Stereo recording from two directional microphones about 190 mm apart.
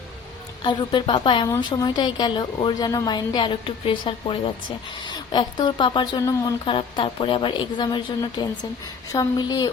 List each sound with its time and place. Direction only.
0.6 s a woman's voice: 25° left (ahead or behind)